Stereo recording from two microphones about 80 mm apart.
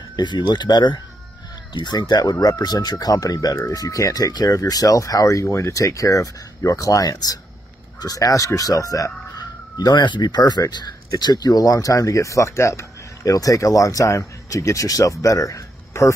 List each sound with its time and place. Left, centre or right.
0.1 s speech: left
9.8 s speech: left